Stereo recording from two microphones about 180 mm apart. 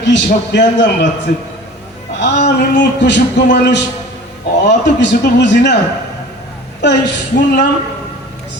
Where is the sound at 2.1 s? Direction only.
70° left (ahead or behind).